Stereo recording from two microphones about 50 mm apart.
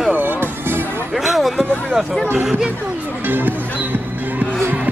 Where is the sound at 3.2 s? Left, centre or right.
Right.